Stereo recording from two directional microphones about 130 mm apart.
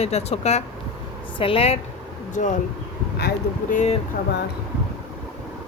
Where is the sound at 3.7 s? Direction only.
65° left (ahead or behind).